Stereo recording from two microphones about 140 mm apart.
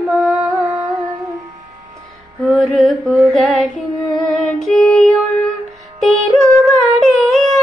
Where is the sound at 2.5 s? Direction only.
Centre (ahead or behind).